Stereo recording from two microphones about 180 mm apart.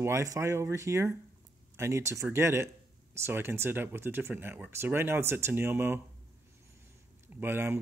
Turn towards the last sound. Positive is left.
turn(degrees=-10)  # may be behind; listen again after turning